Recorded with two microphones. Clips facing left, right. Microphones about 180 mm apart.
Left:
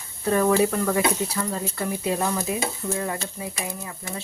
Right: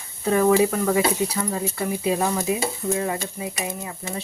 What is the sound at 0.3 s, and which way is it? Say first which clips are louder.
Speech: right 2 dB; 15° right (ahead or behind).